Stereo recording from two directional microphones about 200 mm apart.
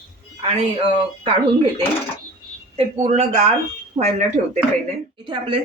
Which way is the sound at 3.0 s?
35° right (ahead or behind).